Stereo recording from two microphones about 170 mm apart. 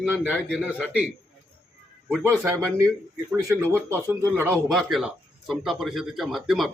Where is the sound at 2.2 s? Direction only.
15° right (ahead or behind).